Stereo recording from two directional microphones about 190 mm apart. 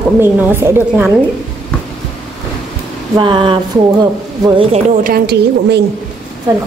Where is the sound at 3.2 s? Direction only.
25° right (ahead or behind).